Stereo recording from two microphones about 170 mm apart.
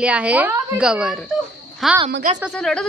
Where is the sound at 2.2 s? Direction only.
50° right (ahead or behind).